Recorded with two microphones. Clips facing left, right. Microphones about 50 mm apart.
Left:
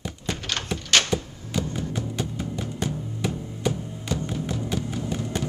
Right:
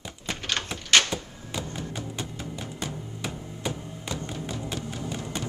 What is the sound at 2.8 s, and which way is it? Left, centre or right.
Music, centre.